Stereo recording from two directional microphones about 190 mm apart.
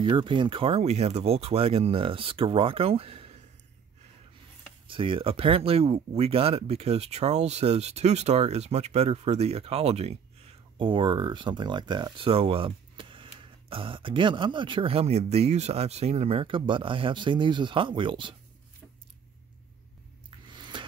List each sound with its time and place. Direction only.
0.0 s speech: 25° right (ahead or behind)
4.8 s speech: 25° right (ahead or behind)
20.2 s a sound: 25° right (ahead or behind)